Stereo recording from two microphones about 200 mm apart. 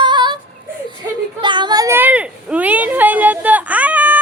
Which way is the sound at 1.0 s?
15° right (ahead or behind).